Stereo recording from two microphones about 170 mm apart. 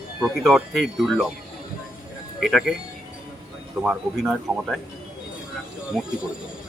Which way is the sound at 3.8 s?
5° right (ahead or behind).